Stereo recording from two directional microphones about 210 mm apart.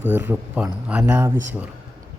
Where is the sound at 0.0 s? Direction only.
10° right (ahead or behind).